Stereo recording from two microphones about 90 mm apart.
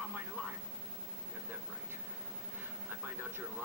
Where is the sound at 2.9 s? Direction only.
20° right (ahead or behind).